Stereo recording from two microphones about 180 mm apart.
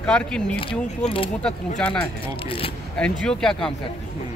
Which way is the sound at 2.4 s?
30° left (ahead or behind).